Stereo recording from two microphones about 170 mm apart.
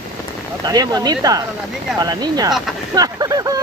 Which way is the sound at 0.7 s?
20° right (ahead or behind).